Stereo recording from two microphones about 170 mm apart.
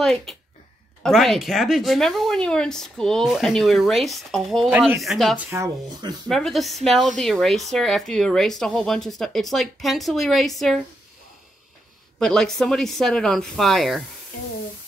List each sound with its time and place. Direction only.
0.0 s speech: 5° left (ahead or behind)
5.5 s speech: 20° right (ahead or behind)
6.2 s speech: centre (ahead or behind)
12.2 s speech: 5° left (ahead or behind)